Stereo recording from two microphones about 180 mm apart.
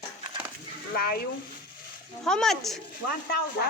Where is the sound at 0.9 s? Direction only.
55° left (ahead or behind).